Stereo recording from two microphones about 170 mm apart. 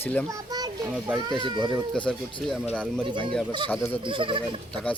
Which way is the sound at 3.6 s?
10° left (ahead or behind).